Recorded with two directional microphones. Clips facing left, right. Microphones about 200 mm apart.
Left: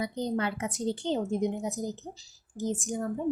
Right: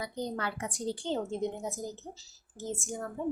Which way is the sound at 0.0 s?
20° left (ahead or behind).